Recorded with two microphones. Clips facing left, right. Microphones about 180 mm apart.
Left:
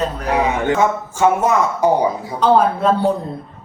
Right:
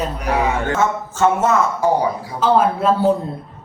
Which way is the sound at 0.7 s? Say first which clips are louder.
Left 3 dB; 15° left (ahead or behind).